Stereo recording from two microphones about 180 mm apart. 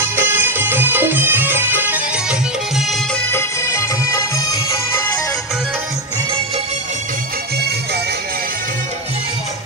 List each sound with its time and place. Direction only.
0.0 s music: 10° right (ahead or behind)
3.3 s music: 15° left (ahead or behind)